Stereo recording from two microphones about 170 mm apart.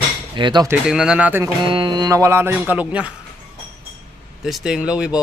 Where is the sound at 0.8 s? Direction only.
5° right (ahead or behind).